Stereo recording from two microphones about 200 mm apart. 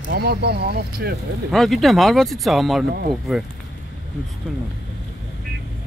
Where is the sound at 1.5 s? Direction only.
Centre (ahead or behind).